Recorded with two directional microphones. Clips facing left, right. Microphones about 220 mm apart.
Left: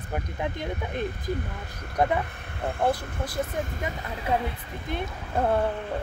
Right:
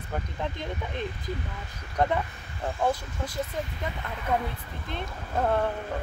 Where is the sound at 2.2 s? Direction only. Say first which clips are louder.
Left 2 dB; 60° left (ahead or behind).